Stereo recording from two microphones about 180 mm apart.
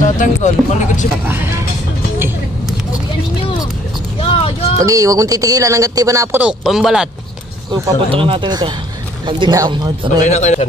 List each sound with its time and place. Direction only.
0.0 s speech: 45° left (ahead or behind)
1.2 s speech: 10° right (ahead or behind)
4.2 s a sound: 35° left (ahead or behind)
4.7 s speech: 20° right (ahead or behind)
6.4 s speech: centre (ahead or behind)
7.7 s speech: 25° right (ahead or behind)
10.2 s speech: 40° left (ahead or behind)